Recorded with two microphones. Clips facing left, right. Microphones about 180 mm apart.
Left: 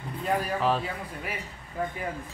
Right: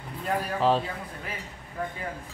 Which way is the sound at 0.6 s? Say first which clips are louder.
Right 7 dB; 30° right (ahead or behind).